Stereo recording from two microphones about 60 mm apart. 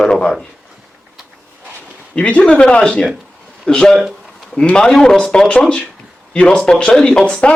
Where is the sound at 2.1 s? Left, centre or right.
Left.